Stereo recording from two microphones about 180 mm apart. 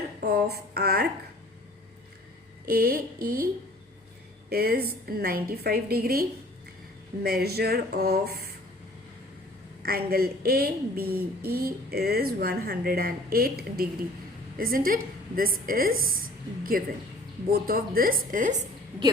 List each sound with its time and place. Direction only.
0.2 s a woman's voice: 60° right (ahead or behind)
2.6 s a woman's voice: 55° right (ahead or behind)
9.8 s a woman's voice: 55° right (ahead or behind)